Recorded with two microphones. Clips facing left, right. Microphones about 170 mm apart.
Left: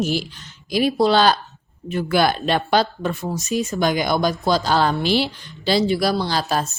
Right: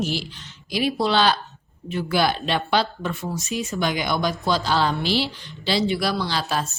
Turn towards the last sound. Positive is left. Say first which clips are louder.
# left 3 dB
turn(degrees=40)  # may be behind; listen again after turning